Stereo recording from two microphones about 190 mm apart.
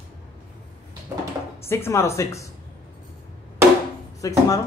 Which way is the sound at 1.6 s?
15° left (ahead or behind).